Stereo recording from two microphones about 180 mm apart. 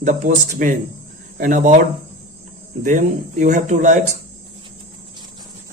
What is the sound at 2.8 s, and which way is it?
Speech, 40° right (ahead or behind).